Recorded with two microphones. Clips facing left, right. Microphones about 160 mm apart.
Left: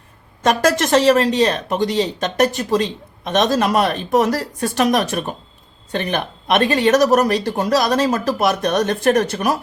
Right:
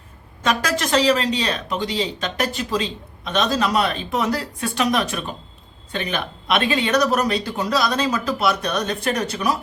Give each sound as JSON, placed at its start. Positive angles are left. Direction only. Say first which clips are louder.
{"t": 0.4, "sound": "speech", "louder": "left 6 dB", "side_deg": 45}